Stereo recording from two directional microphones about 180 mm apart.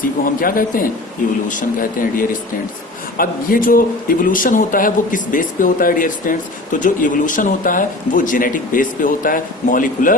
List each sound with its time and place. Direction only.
0.4 s speech: 50° left (ahead or behind)